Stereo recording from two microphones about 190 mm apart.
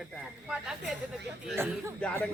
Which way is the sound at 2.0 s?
5° left (ahead or behind).